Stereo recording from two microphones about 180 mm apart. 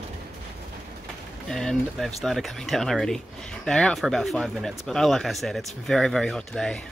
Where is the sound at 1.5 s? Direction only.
5° left (ahead or behind).